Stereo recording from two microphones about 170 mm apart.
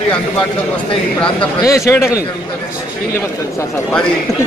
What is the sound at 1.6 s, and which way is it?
Speech, 15° left (ahead or behind).